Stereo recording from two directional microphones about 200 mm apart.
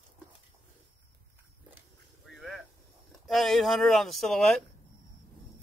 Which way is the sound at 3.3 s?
Centre (ahead or behind).